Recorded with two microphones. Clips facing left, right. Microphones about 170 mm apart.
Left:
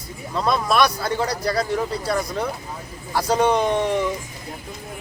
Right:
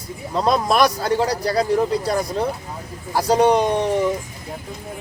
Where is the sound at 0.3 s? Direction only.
25° right (ahead or behind).